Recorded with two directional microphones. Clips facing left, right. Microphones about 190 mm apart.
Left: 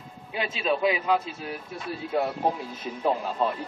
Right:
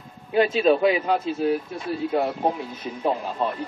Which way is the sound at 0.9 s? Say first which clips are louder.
Right 2 dB; 40° right (ahead or behind).